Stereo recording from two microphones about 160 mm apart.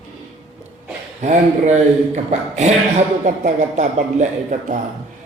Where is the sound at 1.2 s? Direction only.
45° right (ahead or behind).